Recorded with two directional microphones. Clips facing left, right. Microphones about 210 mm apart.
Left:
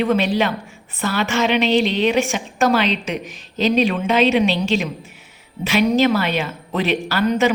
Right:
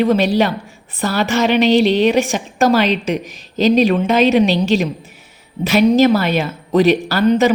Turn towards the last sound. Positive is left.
turn(degrees=-35)  # may be behind; listen again after turning